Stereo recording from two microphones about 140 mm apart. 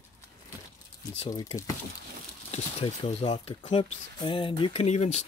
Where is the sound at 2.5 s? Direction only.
40° left (ahead or behind).